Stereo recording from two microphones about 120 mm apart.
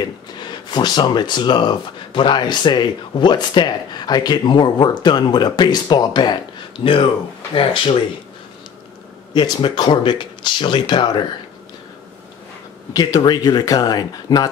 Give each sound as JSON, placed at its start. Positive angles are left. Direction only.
{"t": 0.0, "sound": "speech", "side_deg": 40}
{"t": 9.3, "sound": "speech", "side_deg": 40}
{"t": 12.9, "sound": "speech", "side_deg": 30}